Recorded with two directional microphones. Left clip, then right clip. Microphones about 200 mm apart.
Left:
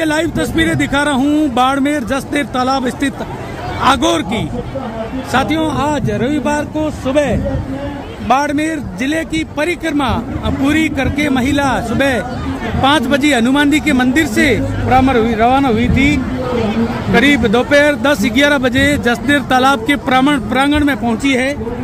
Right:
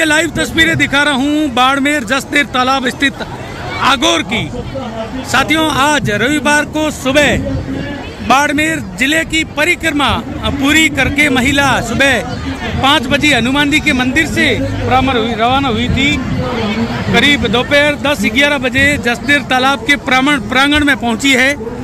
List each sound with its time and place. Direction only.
0.0 s a man's voice: 5° left (ahead or behind)